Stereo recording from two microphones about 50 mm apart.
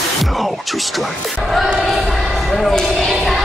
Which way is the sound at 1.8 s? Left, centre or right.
Centre.